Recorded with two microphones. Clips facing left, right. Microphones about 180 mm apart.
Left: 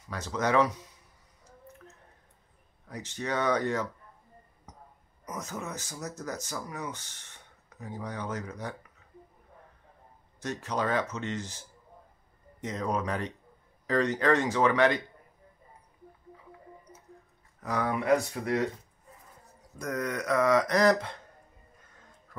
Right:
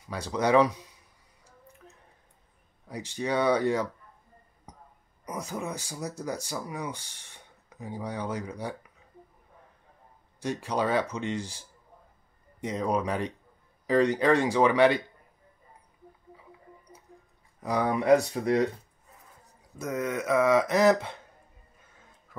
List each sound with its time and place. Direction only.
0.1 s speech: 10° right (ahead or behind)
2.9 s speech: 10° right (ahead or behind)
5.2 s speech: 10° right (ahead or behind)
10.4 s speech: 10° right (ahead or behind)
17.6 s speech: 15° right (ahead or behind)
18.1 s speech: 30° right (ahead or behind)
19.8 s speech: 5° right (ahead or behind)